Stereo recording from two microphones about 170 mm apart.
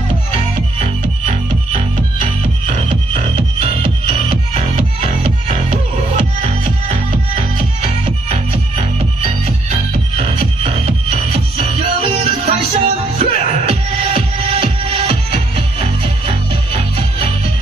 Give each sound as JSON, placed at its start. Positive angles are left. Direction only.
{"t": 3.8, "sound": "music", "side_deg": -35}
{"t": 9.2, "sound": "music", "side_deg": -40}
{"t": 12.0, "sound": "music", "side_deg": -35}